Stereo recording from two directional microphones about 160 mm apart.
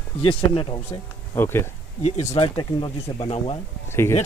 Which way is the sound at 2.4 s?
30° left (ahead or behind).